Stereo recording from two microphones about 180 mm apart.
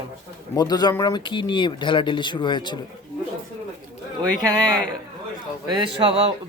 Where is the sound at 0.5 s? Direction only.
20° left (ahead or behind).